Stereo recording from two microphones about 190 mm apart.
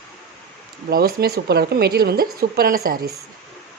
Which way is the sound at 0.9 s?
55° right (ahead or behind).